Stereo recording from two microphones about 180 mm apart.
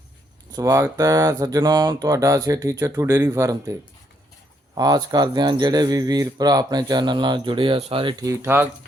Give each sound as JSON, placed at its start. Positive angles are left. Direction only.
{"t": 0.5, "sound": "speech", "side_deg": -15}
{"t": 8.2, "sound": "speech", "side_deg": -15}